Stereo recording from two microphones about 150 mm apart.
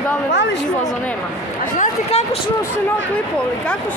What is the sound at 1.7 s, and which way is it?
Speech, 45° left (ahead or behind).